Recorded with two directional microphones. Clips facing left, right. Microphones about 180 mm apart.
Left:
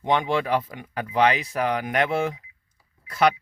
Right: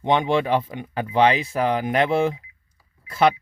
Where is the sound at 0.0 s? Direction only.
20° right (ahead or behind).